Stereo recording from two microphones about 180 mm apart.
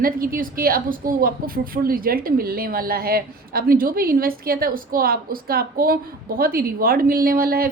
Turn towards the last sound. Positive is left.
turn(degrees=-55)  # may be behind; listen again after turning